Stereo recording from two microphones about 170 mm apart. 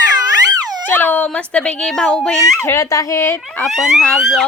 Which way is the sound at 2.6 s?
15° left (ahead or behind).